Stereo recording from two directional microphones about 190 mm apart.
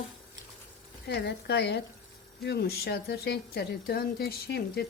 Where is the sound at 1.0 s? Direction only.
65° left (ahead or behind).